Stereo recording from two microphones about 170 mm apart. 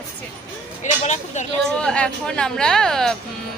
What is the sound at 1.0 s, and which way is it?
Speech, 45° left (ahead or behind).